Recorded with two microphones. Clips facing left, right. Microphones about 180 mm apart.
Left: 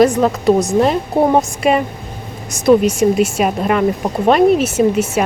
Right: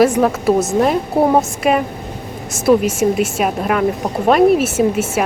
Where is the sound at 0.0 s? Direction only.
5° right (ahead or behind).